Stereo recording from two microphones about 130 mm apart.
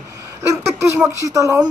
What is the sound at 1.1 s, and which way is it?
Speech, 25° right (ahead or behind).